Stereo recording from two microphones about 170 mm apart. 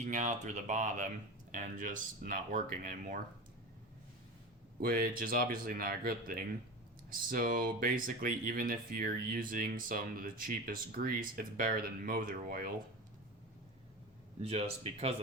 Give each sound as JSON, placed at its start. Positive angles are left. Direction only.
{"t": 0.0, "sound": "speech", "side_deg": -45}
{"t": 4.8, "sound": "speech", "side_deg": -60}
{"t": 14.4, "sound": "speech", "side_deg": -35}